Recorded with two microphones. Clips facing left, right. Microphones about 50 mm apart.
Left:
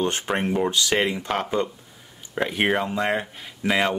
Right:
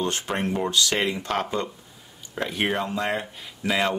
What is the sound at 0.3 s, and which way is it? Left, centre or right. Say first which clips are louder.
Speech: left 3 dB; centre.